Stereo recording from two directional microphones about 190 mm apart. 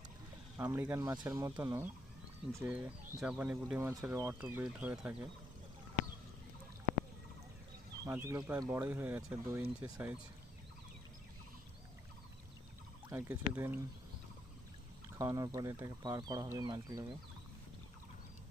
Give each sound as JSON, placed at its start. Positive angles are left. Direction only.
{"t": 0.5, "sound": "speech", "side_deg": -10}
{"t": 8.0, "sound": "speech", "side_deg": -15}
{"t": 13.1, "sound": "speech", "side_deg": -15}
{"t": 15.2, "sound": "speech", "side_deg": -20}